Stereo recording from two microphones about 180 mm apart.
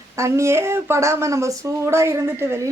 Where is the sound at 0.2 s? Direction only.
15° right (ahead or behind).